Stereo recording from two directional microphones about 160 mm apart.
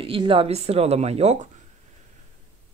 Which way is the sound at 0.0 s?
35° right (ahead or behind).